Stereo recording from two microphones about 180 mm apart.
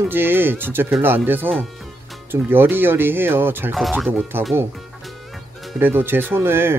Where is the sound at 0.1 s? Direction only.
10° right (ahead or behind).